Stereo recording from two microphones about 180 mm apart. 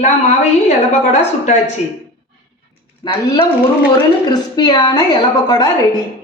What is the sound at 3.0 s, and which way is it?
A woman's voice, 30° left (ahead or behind).